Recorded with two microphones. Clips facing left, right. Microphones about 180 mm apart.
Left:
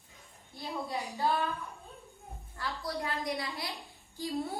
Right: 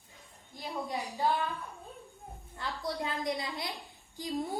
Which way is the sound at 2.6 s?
20° right (ahead or behind).